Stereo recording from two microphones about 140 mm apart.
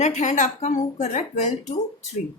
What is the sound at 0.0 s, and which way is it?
Speech, 55° left (ahead or behind).